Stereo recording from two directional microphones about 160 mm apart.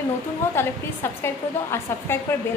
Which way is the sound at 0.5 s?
15° left (ahead or behind).